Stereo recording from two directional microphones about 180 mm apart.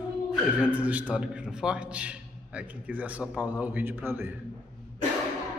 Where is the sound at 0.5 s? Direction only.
10° right (ahead or behind).